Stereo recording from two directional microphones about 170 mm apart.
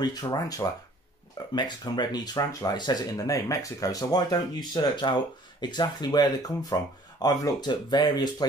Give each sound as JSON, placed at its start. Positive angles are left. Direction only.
{"t": 0.0, "sound": "speech", "side_deg": 25}